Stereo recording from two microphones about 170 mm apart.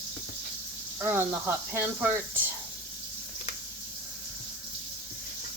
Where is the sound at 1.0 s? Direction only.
10° right (ahead or behind).